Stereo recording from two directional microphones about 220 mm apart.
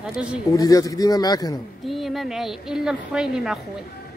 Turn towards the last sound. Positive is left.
turn(degrees=-5)  # may be behind; listen again after turning